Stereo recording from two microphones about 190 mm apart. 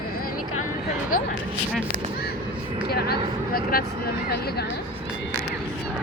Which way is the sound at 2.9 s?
55° left (ahead or behind).